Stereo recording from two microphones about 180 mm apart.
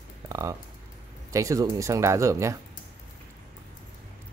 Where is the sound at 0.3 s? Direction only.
20° right (ahead or behind).